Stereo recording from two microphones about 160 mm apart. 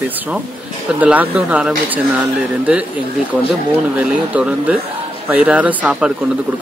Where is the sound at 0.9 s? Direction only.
10° right (ahead or behind).